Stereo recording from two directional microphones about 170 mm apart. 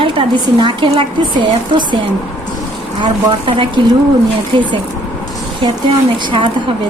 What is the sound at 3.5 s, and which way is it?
Speech, 30° right (ahead or behind).